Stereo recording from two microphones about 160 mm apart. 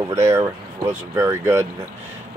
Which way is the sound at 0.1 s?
15° right (ahead or behind).